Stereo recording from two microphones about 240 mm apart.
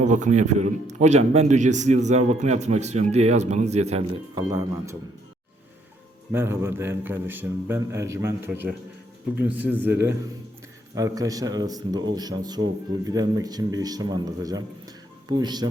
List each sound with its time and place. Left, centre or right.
0.0 s a man's voice: right; by 4.9 s centre
6.3 s a man's voice: centre